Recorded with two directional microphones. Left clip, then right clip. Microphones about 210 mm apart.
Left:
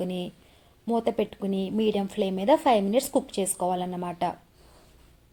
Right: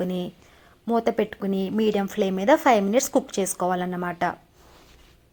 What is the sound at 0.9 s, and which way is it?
A woman's voice, 35° right (ahead or behind).